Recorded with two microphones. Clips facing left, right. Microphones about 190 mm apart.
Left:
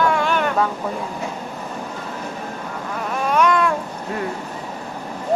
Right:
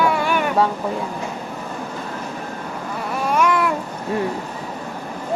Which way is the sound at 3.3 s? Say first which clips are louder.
Left 1 dB; 5° right (ahead or behind).